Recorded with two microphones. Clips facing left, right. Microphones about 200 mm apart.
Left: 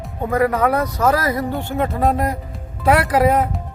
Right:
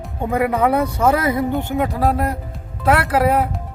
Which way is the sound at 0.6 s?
25° right (ahead or behind).